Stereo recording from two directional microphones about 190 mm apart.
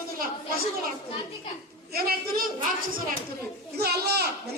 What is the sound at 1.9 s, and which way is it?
Speech, 50° right (ahead or behind).